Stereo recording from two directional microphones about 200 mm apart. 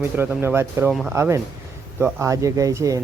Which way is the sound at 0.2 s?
10° right (ahead or behind).